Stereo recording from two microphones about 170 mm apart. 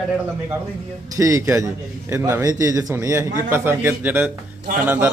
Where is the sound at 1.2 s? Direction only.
20° right (ahead or behind).